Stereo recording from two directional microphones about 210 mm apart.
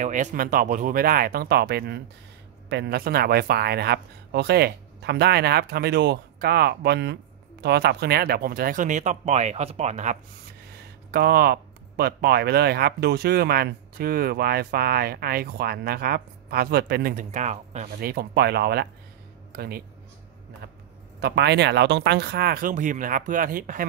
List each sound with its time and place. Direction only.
0.0 s speech: 35° right (ahead or behind)
11.1 s speech: 45° right (ahead or behind)
18.1 s speech: 50° right (ahead or behind)
21.2 s speech: 55° right (ahead or behind)